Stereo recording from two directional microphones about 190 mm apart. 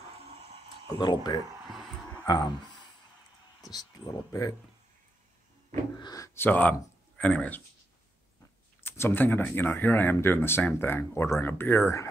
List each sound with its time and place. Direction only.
0.8 s speech: 20° left (ahead or behind)
5.9 s speech: 20° left (ahead or behind)
8.8 s speech: 10° left (ahead or behind)